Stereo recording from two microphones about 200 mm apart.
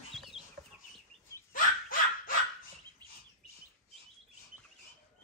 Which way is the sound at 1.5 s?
45° left (ahead or behind).